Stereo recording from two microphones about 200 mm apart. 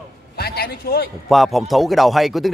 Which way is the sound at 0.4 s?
50° left (ahead or behind).